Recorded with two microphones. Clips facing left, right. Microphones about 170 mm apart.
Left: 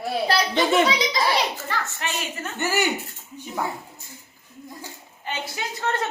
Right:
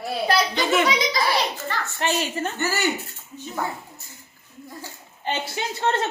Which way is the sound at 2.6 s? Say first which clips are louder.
Left 3 dB; 15° left (ahead or behind).